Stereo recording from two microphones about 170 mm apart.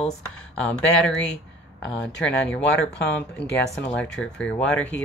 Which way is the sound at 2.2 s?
5° left (ahead or behind).